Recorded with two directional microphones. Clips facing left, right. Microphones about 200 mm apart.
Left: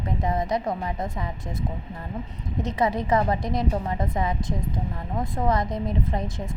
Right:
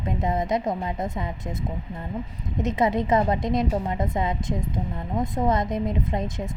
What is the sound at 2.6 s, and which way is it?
A woman's voice, 20° right (ahead or behind).